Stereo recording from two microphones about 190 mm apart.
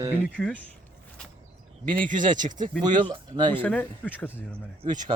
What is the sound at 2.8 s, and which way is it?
Speech, 25° right (ahead or behind).